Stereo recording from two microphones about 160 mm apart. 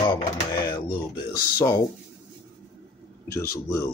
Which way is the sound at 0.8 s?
20° left (ahead or behind).